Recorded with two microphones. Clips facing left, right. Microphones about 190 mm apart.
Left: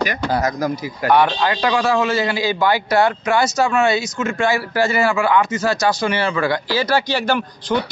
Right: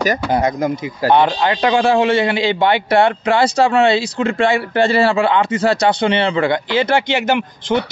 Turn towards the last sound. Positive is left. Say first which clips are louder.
# right 2 dB
turn(degrees=-20)  # may be behind; listen again after turning